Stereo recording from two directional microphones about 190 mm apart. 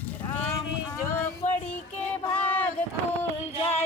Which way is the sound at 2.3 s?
10° left (ahead or behind).